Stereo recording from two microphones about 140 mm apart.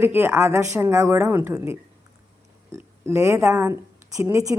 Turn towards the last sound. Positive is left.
turn(degrees=-20)  # may be behind; listen again after turning